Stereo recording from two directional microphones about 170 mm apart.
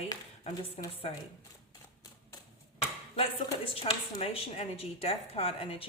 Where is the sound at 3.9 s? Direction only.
35° left (ahead or behind).